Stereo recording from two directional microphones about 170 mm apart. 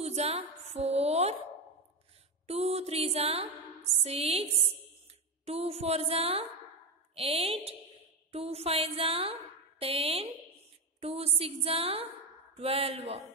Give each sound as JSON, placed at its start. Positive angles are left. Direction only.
{"t": 0.0, "sound": "music", "side_deg": -40}
{"t": 2.4, "sound": "music", "side_deg": -35}
{"t": 8.3, "sound": "a sound", "side_deg": -35}
{"t": 11.0, "sound": "music", "side_deg": -35}